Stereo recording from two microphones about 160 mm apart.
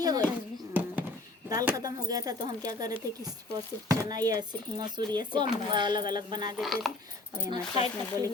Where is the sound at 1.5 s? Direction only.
20° right (ahead or behind).